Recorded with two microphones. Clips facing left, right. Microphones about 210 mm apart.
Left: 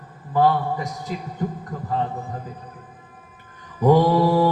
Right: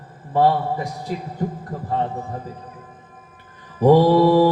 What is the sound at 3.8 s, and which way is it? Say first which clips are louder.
Mantra: right 3 dB; 35° right (ahead or behind).